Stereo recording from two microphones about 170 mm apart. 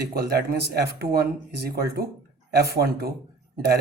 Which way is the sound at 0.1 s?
65° right (ahead or behind).